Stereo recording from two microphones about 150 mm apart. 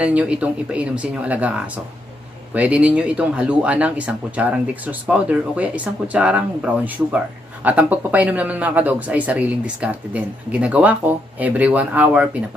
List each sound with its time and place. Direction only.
0.0 s speech: 10° right (ahead or behind)